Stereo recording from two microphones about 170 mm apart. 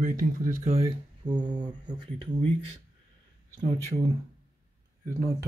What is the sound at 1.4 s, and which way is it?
Speech, 25° right (ahead or behind).